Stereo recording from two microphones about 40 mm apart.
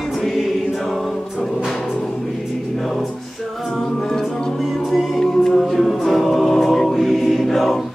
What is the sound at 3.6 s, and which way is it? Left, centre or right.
Music, centre.